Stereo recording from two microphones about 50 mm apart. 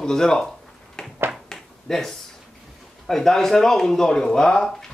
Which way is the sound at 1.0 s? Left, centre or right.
Centre.